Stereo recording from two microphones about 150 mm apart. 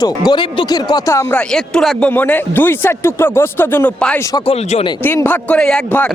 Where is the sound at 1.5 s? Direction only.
5° left (ahead or behind).